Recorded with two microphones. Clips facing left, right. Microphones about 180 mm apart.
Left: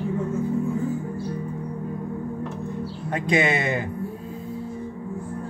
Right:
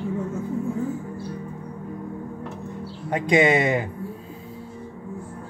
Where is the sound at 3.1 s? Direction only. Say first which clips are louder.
Right 4 dB; 15° right (ahead or behind).